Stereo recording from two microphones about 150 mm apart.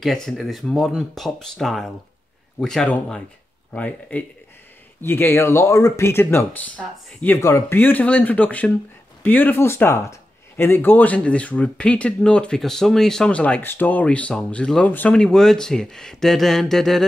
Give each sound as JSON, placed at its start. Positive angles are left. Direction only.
{"t": 0.0, "sound": "speech", "side_deg": 0}